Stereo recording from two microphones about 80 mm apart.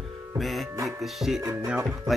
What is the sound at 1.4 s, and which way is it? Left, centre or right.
Music, right.